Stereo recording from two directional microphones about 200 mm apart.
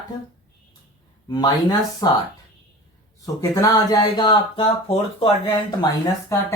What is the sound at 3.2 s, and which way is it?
Speech, 15° left (ahead or behind).